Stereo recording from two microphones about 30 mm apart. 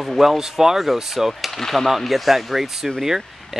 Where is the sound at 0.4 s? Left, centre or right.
Centre.